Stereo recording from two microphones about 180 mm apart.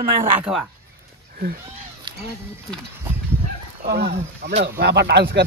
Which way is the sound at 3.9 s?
65° right (ahead or behind).